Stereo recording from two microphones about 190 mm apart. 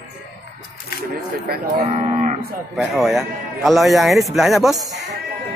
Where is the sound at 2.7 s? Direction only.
Centre (ahead or behind).